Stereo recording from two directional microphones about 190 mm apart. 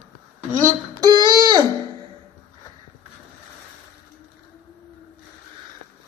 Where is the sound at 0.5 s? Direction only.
20° right (ahead or behind).